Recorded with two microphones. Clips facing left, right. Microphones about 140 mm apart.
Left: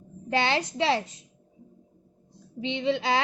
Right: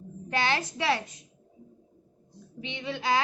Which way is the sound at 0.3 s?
25° left (ahead or behind).